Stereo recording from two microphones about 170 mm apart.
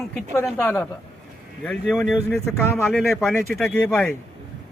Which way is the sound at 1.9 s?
5° left (ahead or behind).